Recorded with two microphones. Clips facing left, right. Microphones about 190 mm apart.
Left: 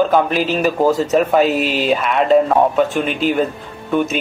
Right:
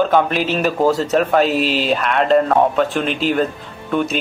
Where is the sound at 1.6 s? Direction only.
50° left (ahead or behind).